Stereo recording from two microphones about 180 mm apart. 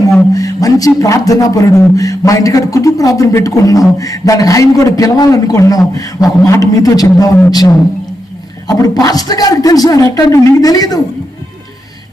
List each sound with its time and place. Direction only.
0.3 s a man's voice: 20° left (ahead or behind)